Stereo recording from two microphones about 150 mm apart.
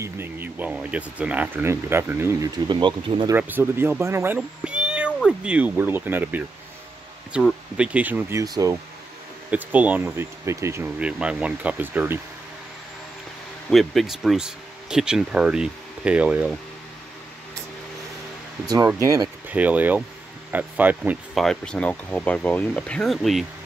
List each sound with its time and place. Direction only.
0.0 s speech: 15° right (ahead or behind); by 3.3 s 30° right (ahead or behind)
3.3 s speech: 15° right (ahead or behind)
9.5 s speech: 10° right (ahead or behind)
11.0 s speech: 5° right (ahead or behind)
13.7 s speech: centre (ahead or behind)
18.9 s speech: 20° right (ahead or behind)
19.5 s speech: 10° right (ahead or behind)
21.4 s speech: 5° left (ahead or behind)